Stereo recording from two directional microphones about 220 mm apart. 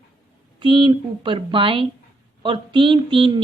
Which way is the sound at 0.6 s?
20° right (ahead or behind).